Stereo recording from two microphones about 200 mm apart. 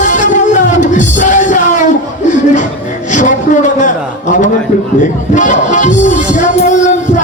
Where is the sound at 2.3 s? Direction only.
40° left (ahead or behind).